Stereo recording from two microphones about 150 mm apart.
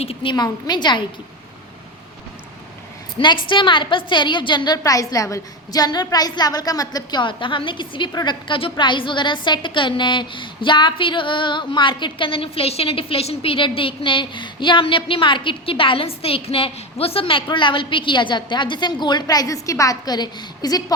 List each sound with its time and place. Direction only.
0.0 s a woman's voice: 35° left (ahead or behind)
3.2 s a woman's voice: 35° left (ahead or behind)